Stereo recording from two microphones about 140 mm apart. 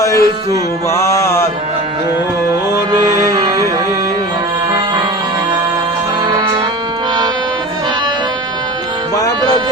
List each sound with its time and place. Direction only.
0.0 s music: 25° left (ahead or behind)
2.9 s music: 25° right (ahead or behind)